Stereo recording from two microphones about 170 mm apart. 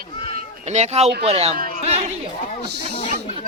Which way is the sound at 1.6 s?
55° right (ahead or behind).